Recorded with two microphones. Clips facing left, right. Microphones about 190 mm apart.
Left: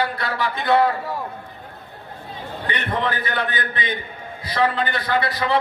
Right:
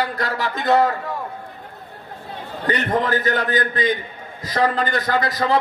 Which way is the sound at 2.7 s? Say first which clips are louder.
Right 5 dB; 40° right (ahead or behind).